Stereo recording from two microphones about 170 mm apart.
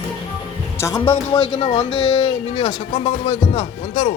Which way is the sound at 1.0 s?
30° left (ahead or behind).